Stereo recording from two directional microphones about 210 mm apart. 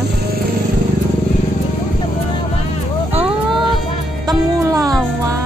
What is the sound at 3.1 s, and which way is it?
Vehicle, 5° right (ahead or behind).